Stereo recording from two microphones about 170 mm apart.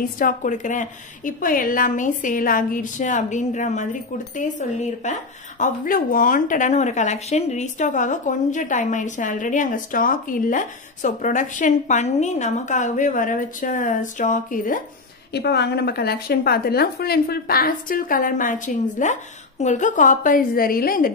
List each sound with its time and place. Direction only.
0.2 s a woman's voice: 50° left (ahead or behind)
15.3 s a woman's voice: 80° left; by 21.1 s 60° left (ahead or behind)